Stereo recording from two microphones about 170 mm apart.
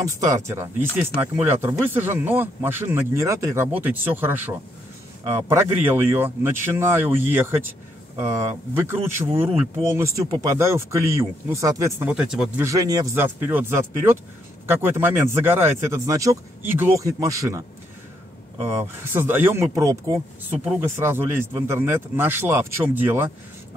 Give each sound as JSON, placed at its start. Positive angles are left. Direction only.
{"t": 0.0, "sound": "speech", "side_deg": -20}
{"t": 12.1, "sound": "speech", "side_deg": -5}
{"t": 12.6, "sound": "speech", "side_deg": -20}
{"t": 19.0, "sound": "speech", "side_deg": -10}